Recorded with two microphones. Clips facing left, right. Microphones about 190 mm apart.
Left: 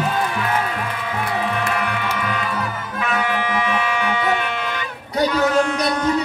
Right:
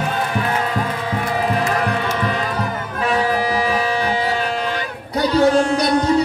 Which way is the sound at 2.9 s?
35° right (ahead or behind).